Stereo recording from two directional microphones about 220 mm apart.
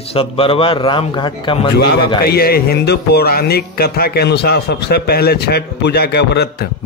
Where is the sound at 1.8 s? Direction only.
45° left (ahead or behind).